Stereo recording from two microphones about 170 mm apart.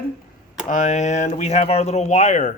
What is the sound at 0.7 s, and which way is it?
Speech, 45° left (ahead or behind).